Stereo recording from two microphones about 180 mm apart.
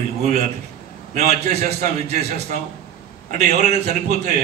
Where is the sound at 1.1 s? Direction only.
40° right (ahead or behind).